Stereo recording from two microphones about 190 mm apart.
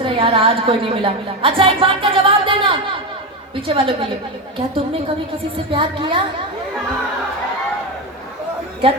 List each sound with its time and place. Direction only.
0.0 s a woman's voice: 30° right (ahead or behind)
5.7 s a woman's voice: 25° right (ahead or behind)